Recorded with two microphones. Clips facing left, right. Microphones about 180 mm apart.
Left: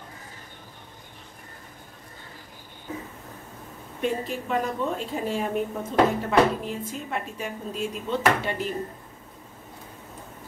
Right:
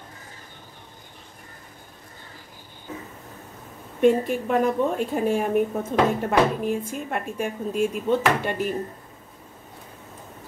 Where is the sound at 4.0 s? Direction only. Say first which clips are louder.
Right 9 dB; 55° right (ahead or behind).